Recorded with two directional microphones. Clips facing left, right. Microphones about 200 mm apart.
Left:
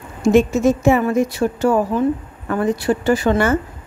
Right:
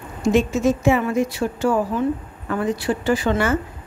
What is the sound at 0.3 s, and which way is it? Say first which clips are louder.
A woman's voice: left 4 dB; 50° left (ahead or behind).